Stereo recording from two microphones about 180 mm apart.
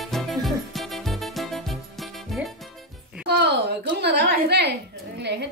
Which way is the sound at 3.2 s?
65° right (ahead or behind).